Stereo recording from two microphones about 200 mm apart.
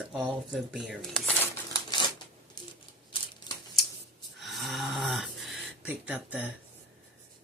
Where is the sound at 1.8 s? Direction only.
20° left (ahead or behind).